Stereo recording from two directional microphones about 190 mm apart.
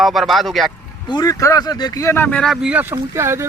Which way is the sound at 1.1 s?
20° left (ahead or behind).